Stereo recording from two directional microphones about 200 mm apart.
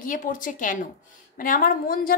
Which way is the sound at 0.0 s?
45° left (ahead or behind).